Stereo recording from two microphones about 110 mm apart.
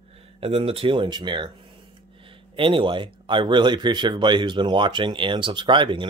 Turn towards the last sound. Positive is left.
turn(degrees=-50)  # may be behind; listen again after turning